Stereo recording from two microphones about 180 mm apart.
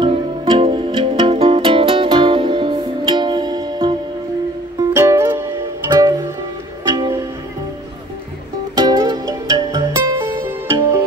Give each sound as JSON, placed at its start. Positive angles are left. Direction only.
{"t": 0.0, "sound": "music", "side_deg": -30}
{"t": 4.9, "sound": "music", "side_deg": -15}
{"t": 8.7, "sound": "music", "side_deg": -20}